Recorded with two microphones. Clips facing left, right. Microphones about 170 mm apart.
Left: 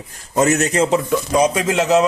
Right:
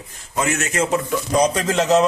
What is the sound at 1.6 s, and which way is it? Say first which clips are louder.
Speech: left 1 dB; centre (ahead or behind).